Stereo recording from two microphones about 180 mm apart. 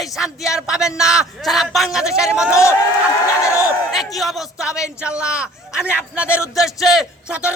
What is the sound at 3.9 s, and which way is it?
Speech, centre (ahead or behind).